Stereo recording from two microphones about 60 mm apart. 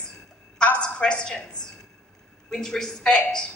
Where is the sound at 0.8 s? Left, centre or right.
Centre.